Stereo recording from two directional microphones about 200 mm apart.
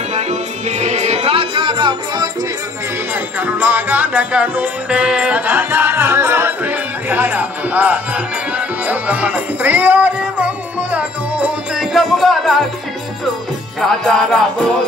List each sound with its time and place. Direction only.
0.1 s music: 35° right (ahead or behind)
3.3 s music: 10° right (ahead or behind)
13.7 s music: centre (ahead or behind)